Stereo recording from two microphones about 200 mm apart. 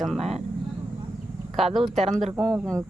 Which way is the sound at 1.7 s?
Centre (ahead or behind).